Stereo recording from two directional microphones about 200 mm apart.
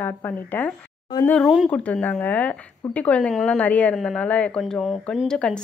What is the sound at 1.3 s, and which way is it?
A woman's voice, centre (ahead or behind).